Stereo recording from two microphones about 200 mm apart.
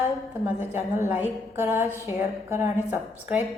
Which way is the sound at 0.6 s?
10° right (ahead or behind).